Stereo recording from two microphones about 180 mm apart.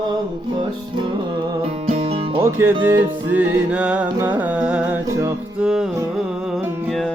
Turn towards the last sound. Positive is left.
turn(degrees=-5)  # may be behind; listen again after turning